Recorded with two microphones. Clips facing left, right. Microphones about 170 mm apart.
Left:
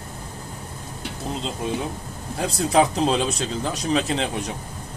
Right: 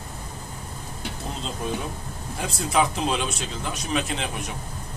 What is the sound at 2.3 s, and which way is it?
Speech, 30° left (ahead or behind).